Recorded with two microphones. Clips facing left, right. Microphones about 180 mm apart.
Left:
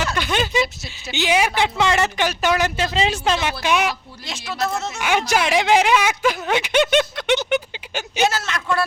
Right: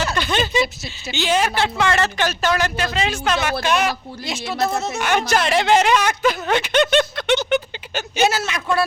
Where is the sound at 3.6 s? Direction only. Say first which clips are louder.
Even; 15° left (ahead or behind).